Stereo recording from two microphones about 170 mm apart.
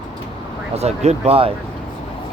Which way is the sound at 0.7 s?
40° right (ahead or behind).